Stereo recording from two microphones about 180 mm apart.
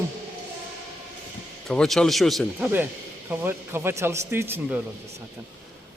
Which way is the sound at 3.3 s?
10° right (ahead or behind).